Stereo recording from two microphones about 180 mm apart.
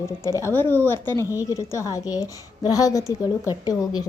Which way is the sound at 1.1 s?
15° right (ahead or behind).